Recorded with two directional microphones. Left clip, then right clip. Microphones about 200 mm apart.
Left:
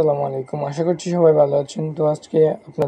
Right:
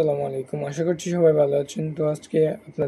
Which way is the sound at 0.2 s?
40° left (ahead or behind).